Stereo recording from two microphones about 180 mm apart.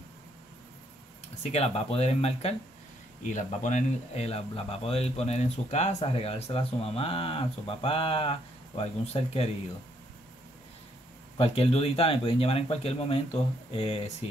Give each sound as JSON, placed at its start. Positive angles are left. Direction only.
{"t": 1.4, "sound": "speech", "side_deg": 35}
{"t": 11.3, "sound": "speech", "side_deg": 35}